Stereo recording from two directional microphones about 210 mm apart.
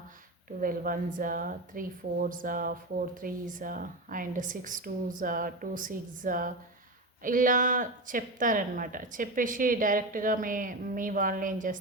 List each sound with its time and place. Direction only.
0.6 s a woman's voice: 40° right (ahead or behind)